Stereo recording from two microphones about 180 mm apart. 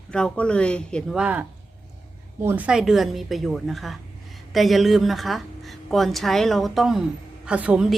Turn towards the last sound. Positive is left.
turn(degrees=-5)  # may be behind; listen again after turning